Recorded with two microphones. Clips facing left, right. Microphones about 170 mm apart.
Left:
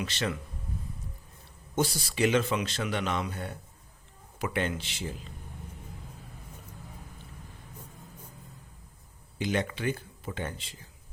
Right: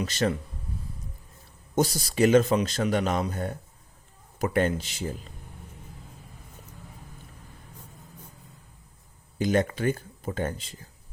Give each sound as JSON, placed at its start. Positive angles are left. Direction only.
{"t": 0.0, "sound": "speech", "side_deg": -40}
{"t": 1.7, "sound": "speech", "side_deg": -40}
{"t": 9.4, "sound": "speech", "side_deg": -45}